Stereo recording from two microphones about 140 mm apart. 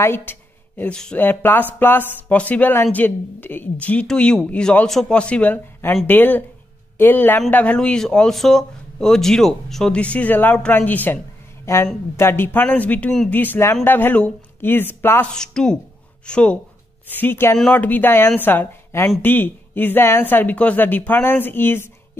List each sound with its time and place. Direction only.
0.0 s speech: 15° left (ahead or behind)
11.6 s speech: 20° left (ahead or behind)